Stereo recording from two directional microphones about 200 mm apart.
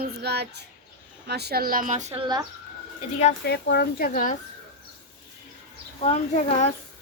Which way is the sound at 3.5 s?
55° left (ahead or behind).